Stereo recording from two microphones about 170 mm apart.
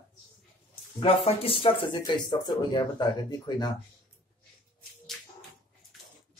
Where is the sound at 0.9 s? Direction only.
35° left (ahead or behind).